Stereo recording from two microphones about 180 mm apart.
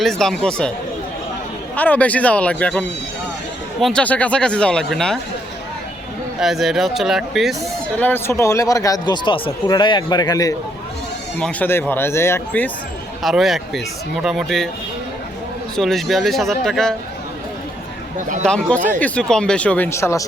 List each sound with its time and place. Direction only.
0.0 s speech: centre (ahead or behind)
1.7 s speech: 10° left (ahead or behind)
6.4 s speech: centre (ahead or behind)
7.9 s speech: 10° left (ahead or behind)
11.3 s speech: 5° left (ahead or behind)
13.2 s speech: centre (ahead or behind)
15.7 s speech: centre (ahead or behind)
18.4 s speech: 5° left (ahead or behind)